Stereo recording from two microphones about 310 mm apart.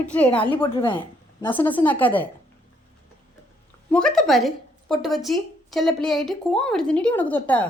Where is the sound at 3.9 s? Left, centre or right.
Centre.